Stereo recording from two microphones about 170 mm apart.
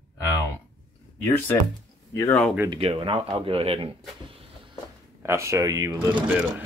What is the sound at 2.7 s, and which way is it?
Speech, 30° right (ahead or behind).